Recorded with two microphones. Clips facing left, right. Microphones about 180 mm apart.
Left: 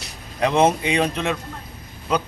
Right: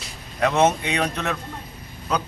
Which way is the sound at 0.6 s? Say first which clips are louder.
Left 2 dB; 30° left (ahead or behind).